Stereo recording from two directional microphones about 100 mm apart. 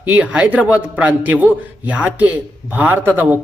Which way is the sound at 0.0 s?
15° right (ahead or behind).